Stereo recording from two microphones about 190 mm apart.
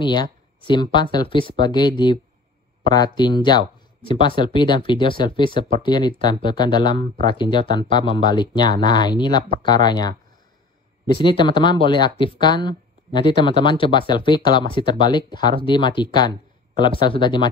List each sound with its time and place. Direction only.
0.0 s speech: 25° left (ahead or behind)
11.1 s speech: 25° left (ahead or behind)